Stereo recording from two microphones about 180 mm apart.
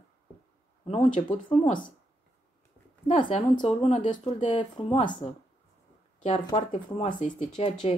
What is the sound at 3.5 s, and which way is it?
Speech, 35° left (ahead or behind).